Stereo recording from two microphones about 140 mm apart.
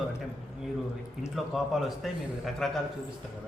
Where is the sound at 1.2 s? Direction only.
Centre (ahead or behind).